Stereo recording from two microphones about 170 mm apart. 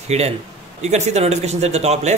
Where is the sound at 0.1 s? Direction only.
40° right (ahead or behind).